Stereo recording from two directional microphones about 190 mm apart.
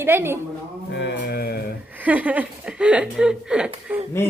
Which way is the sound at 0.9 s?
65° left (ahead or behind).